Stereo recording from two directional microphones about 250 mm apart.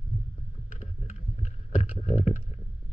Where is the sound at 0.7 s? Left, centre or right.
Left.